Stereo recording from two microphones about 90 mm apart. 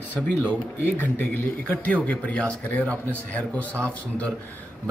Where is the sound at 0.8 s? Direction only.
20° left (ahead or behind).